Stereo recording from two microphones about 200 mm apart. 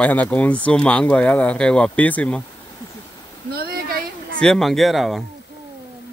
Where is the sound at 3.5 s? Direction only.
50° right (ahead or behind).